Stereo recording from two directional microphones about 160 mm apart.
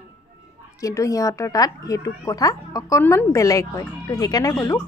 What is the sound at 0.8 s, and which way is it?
A woman's voice, 20° left (ahead or behind).